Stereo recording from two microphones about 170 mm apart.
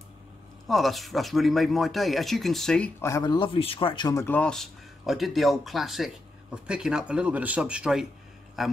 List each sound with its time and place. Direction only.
0.7 s speech: centre (ahead or behind)
3.0 s a man's voice: 20° left (ahead or behind)
4.4 s speech: 5° left (ahead or behind)